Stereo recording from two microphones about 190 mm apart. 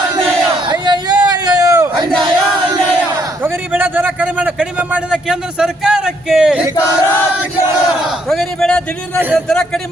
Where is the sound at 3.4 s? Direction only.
10° right (ahead or behind).